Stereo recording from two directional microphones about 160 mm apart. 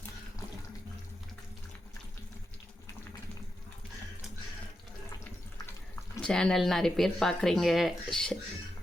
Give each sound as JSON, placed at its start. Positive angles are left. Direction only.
{"t": 6.2, "sound": "speech", "side_deg": 5}